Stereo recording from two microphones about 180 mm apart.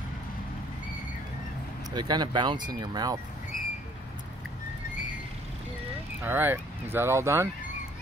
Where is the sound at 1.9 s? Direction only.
25° right (ahead or behind).